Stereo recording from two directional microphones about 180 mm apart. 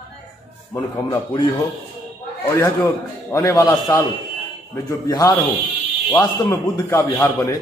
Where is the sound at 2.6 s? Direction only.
15° left (ahead or behind).